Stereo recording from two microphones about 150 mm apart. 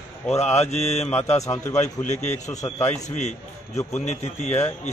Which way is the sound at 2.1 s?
50° left (ahead or behind).